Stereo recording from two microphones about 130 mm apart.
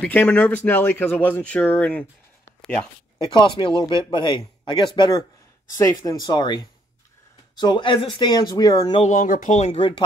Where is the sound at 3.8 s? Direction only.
35° left (ahead or behind).